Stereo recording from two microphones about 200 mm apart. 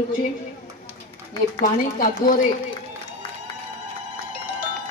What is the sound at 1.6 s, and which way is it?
Speech, 40° left (ahead or behind).